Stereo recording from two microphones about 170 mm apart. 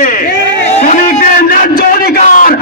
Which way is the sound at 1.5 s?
60° left (ahead or behind).